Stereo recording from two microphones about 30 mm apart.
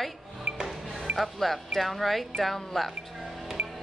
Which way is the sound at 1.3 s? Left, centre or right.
Centre.